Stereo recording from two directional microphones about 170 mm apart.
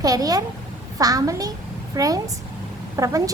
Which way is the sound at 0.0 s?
20° right (ahead or behind).